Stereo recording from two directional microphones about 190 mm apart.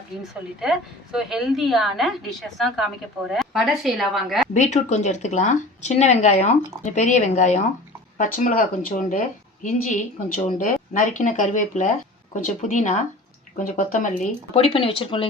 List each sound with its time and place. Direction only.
0.2 s a woman's voice: centre (ahead or behind)
4.5 s speech: 40° left (ahead or behind)
14.5 s speech: 30° left (ahead or behind)